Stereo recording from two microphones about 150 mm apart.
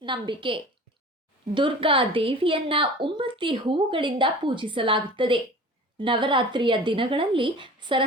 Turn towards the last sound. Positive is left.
turn(degrees=-30)  # may be behind; listen again after turning